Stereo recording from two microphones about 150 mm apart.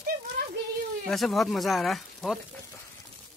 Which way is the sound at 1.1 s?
Centre (ahead or behind).